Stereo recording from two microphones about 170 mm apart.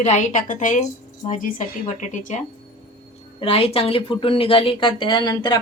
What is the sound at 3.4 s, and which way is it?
Speech, 35° left (ahead or behind).